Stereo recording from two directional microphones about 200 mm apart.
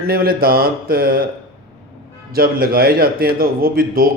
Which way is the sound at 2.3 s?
50° right (ahead or behind).